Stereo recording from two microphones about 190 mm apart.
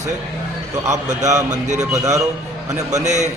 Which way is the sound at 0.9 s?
40° right (ahead or behind).